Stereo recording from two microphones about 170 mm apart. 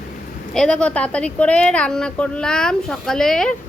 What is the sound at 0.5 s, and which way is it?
Speech, 5° left (ahead or behind).